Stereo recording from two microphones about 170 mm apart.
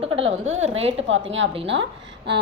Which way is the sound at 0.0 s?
35° right (ahead or behind).